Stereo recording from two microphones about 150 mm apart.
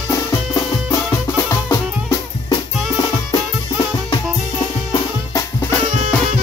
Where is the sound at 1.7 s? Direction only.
20° left (ahead or behind).